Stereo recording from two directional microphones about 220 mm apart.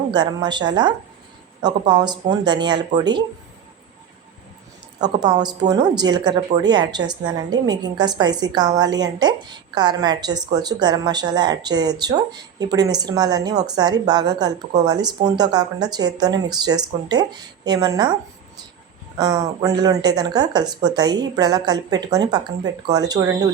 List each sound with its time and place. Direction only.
0.1 s a woman's voice: 20° right (ahead or behind)
4.9 s a woman's voice: 20° right (ahead or behind)
19.1 s a woman's voice: 20° right (ahead or behind)